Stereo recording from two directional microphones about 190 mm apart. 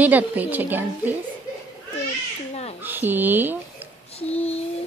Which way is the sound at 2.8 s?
10° right (ahead or behind).